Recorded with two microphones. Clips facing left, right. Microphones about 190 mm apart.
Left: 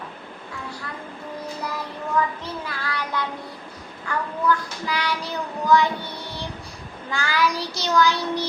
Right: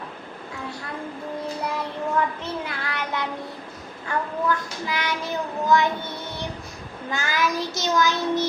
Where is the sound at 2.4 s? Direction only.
25° right (ahead or behind).